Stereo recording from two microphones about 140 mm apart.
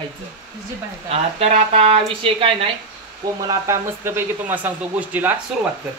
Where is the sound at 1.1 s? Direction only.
45° right (ahead or behind).